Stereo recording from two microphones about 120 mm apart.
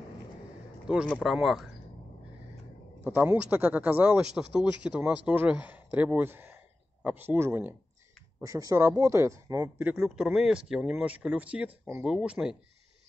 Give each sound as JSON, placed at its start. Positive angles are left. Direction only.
{"t": 0.9, "sound": "speech", "side_deg": -5}
{"t": 3.0, "sound": "speech", "side_deg": -15}
{"t": 8.4, "sound": "speech", "side_deg": -30}
{"t": 9.9, "sound": "speech", "side_deg": -5}